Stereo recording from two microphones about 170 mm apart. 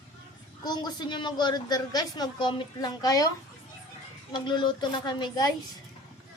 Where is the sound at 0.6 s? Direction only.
25° left (ahead or behind).